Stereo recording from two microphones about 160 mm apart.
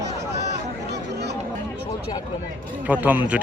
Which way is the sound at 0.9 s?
90° right.